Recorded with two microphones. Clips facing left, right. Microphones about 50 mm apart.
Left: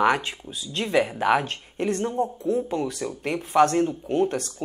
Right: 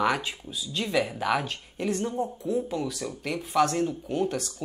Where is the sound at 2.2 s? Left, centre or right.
Left.